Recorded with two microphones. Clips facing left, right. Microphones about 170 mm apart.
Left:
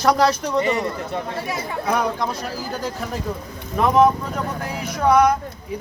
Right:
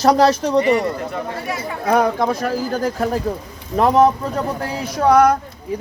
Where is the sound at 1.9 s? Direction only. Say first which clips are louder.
Right 6 dB; 55° right (ahead or behind).